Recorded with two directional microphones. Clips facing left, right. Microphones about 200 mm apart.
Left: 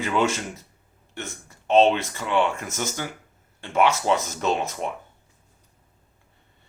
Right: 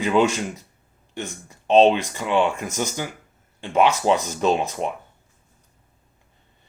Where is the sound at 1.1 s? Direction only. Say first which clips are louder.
Right 4 dB; 15° right (ahead or behind).